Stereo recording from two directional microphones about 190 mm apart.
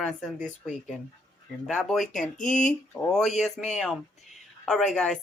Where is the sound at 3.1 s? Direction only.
Centre (ahead or behind).